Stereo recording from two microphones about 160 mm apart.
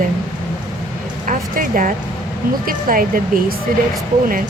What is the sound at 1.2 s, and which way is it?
Speech, 55° right (ahead or behind).